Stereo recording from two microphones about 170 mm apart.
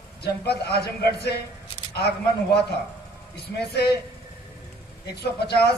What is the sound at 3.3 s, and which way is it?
Speech, 70° left (ahead or behind).